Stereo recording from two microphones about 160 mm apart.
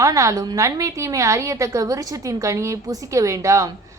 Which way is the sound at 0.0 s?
20° right (ahead or behind).